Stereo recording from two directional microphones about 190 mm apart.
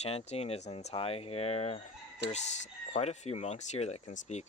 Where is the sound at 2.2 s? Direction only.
65° right (ahead or behind).